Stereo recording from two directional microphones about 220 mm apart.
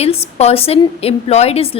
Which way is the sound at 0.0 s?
30° left (ahead or behind).